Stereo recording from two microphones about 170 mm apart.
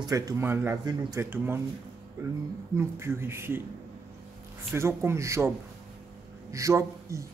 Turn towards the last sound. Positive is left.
turn(degrees=-15)  # may be behind; listen again after turning